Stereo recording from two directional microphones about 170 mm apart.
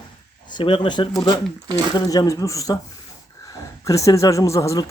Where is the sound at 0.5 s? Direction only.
30° left (ahead or behind).